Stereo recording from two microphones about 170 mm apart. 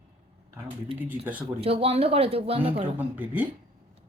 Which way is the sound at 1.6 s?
35° right (ahead or behind).